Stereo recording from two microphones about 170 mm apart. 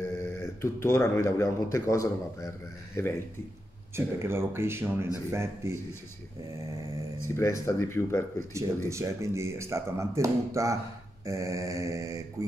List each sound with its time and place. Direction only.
0.2 s speech: 15° left (ahead or behind)
3.9 s speech: 15° right (ahead or behind)
7.2 s speech: 15° left (ahead or behind)
8.5 s speech: 15° right (ahead or behind)
11.2 s mantra: 20° right (ahead or behind)